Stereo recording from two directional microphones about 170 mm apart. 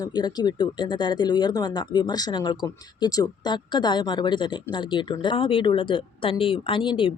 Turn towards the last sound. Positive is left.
turn(degrees=30)  # may be behind; listen again after turning